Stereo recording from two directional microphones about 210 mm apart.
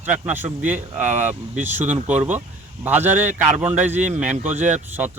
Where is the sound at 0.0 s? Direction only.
5° right (ahead or behind).